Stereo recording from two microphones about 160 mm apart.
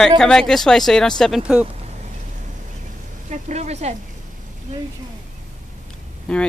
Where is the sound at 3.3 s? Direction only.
45° right (ahead or behind).